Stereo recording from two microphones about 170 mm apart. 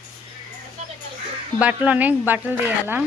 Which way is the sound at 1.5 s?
10° right (ahead or behind).